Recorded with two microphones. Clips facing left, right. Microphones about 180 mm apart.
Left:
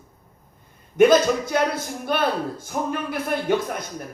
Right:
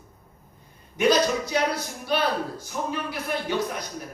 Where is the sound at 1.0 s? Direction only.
50° left (ahead or behind).